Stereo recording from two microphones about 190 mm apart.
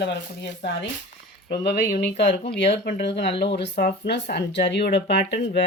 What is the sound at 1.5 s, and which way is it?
Speech, 60° left (ahead or behind).